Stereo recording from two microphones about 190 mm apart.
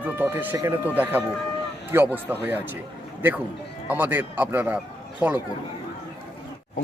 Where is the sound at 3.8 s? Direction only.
10° right (ahead or behind).